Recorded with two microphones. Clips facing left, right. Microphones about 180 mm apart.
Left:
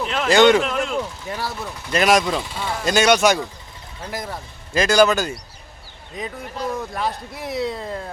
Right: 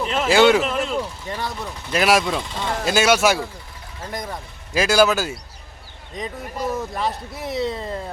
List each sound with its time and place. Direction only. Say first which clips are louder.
0.0 s speech: left 1 dB; 5° right (ahead or behind)
2.8 s speech: left 1 dB; 5° right (ahead or behind)
6.6 s speech: right 1 dB; 5° right (ahead or behind)